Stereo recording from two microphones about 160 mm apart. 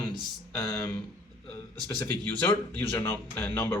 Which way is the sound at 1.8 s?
10° left (ahead or behind).